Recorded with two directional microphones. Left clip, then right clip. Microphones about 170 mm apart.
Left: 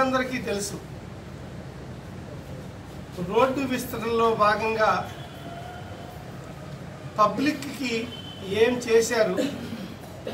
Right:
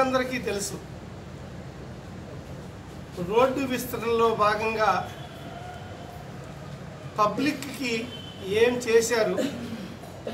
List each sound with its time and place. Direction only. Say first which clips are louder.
0.0 s a man's voice: even; 5° right (ahead or behind)
3.3 s a man's voice: even; 5° right (ahead or behind)
7.2 s a man's voice: left 2 dB; 5° right (ahead or behind)